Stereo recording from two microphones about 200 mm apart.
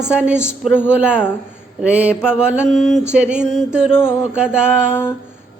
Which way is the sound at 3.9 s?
10° left (ahead or behind).